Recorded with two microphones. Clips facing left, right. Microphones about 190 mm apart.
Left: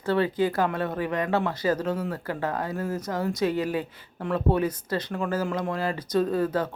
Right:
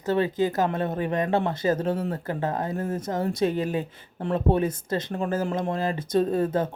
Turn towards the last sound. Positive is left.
turn(degrees=-25)  # may be behind; listen again after turning